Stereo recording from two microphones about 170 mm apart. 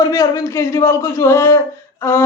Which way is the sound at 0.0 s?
20° left (ahead or behind).